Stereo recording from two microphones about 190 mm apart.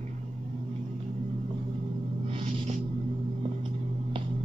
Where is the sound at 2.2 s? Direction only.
30° right (ahead or behind).